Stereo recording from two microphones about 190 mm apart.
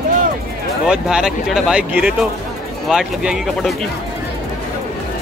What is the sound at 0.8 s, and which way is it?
Speech, 5° right (ahead or behind).